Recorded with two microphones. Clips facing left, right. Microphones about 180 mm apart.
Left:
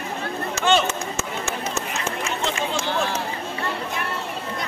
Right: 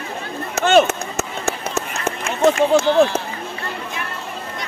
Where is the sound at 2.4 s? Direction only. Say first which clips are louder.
Right 15 dB; 50° right (ahead or behind).